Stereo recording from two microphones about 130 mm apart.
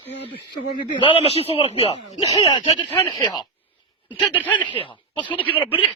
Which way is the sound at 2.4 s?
35° left (ahead or behind).